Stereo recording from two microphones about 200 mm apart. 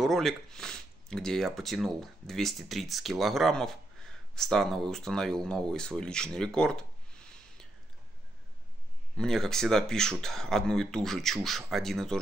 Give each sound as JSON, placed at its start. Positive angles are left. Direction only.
{"t": 0.0, "sound": "speech", "side_deg": 0}
{"t": 9.1, "sound": "speech", "side_deg": 0}